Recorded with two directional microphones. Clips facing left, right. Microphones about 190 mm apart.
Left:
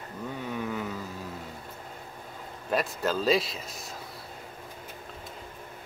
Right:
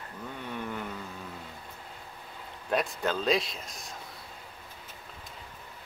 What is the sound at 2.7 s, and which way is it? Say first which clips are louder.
Speech: left 1 dB; centre (ahead or behind).